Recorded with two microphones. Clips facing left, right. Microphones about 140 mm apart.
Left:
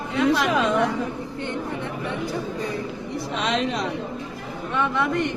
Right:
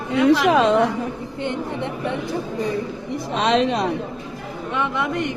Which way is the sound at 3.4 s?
65° right (ahead or behind).